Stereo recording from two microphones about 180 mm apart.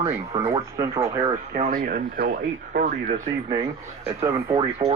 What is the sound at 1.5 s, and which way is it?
Speech, 50° right (ahead or behind).